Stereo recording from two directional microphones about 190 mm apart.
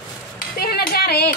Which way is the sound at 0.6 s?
55° left (ahead or behind).